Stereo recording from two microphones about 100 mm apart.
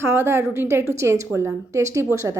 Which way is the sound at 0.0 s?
25° right (ahead or behind).